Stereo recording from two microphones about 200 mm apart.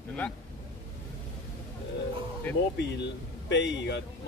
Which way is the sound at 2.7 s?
60° left (ahead or behind).